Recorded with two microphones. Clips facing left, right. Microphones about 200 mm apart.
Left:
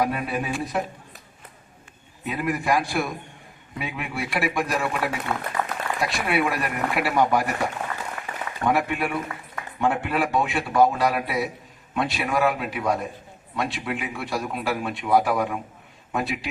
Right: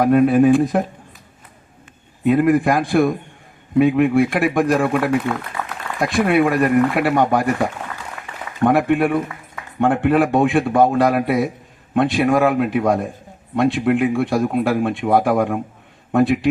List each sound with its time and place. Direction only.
0.0 s speech: 50° right (ahead or behind)
2.2 s a man's voice: 55° right (ahead or behind)
8.6 s a man's voice: 55° right (ahead or behind)